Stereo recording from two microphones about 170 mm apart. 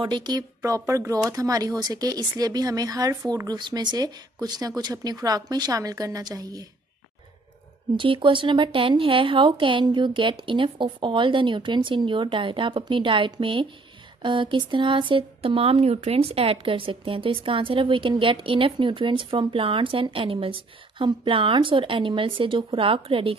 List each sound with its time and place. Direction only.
0.0 s speech: 25° right (ahead or behind)
7.9 s speech: 30° right (ahead or behind)